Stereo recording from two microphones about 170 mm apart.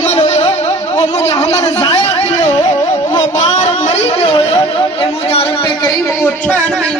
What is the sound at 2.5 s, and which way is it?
Music, 40° left (ahead or behind).